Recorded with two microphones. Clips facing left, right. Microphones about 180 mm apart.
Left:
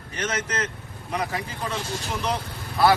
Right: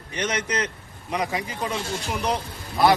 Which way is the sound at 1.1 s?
10° right (ahead or behind).